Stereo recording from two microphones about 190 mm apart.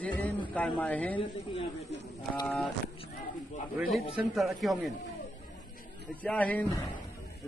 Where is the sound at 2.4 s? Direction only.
5° left (ahead or behind).